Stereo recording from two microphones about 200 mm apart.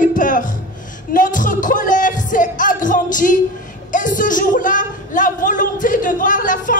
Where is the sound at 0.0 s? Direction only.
40° left (ahead or behind).